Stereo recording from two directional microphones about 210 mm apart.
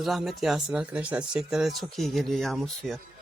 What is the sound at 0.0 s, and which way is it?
Speech, centre (ahead or behind).